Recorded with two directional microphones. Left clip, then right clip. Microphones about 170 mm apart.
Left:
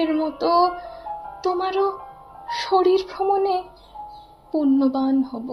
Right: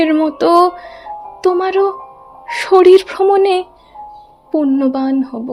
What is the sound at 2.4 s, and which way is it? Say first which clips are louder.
Speech: right 10 dB; 50° right (ahead or behind).